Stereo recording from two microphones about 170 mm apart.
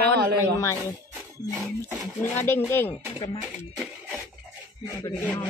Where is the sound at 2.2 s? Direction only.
15° left (ahead or behind).